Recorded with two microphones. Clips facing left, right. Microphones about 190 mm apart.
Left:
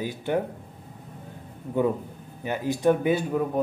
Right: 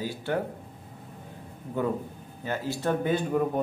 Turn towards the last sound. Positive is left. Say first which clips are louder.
# left 1 dB
turn(degrees=5)  # may be behind; listen again after turning